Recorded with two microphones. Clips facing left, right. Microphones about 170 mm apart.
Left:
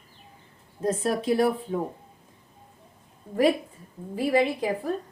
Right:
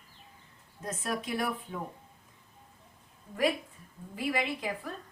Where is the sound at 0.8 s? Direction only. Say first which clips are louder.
Left 9 dB; 30° left (ahead or behind).